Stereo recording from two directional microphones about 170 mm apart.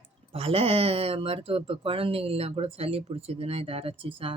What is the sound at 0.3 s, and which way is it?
Speech, 35° right (ahead or behind).